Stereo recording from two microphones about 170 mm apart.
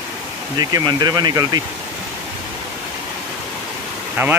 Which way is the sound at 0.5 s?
25° right (ahead or behind).